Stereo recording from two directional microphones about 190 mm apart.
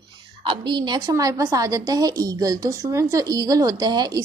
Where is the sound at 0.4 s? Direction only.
25° right (ahead or behind).